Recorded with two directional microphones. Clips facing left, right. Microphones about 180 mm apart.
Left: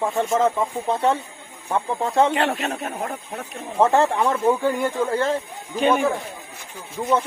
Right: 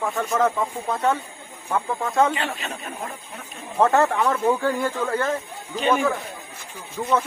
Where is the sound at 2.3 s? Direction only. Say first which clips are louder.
Left 6 dB; 65° left (ahead or behind).